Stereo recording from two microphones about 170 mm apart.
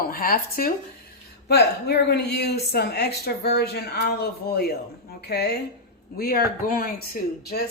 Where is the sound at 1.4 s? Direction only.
70° left (ahead or behind).